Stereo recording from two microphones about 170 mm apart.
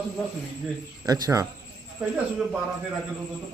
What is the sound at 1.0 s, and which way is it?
Speech, 20° right (ahead or behind).